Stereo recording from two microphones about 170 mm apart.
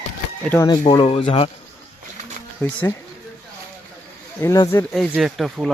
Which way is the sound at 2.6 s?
15° left (ahead or behind).